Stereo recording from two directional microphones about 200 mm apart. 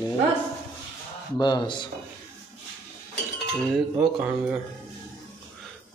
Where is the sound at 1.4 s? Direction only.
20° left (ahead or behind).